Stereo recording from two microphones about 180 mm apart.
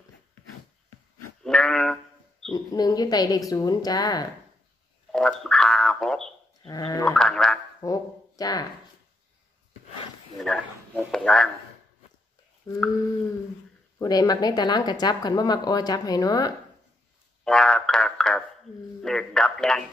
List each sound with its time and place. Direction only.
1.4 s goat: 5° left (ahead or behind)
2.5 s speech: 20° left (ahead or behind)
5.1 s frog: 5° left (ahead or behind)
6.6 s speech: 20° left (ahead or behind)
7.1 s a sound: 5° left (ahead or behind)
7.8 s speech: 20° left (ahead or behind)
10.3 s a sound: centre (ahead or behind)
12.7 s speech: 20° left (ahead or behind)
13.9 s speech: 20° left (ahead or behind)
17.5 s a sound: 5° left (ahead or behind)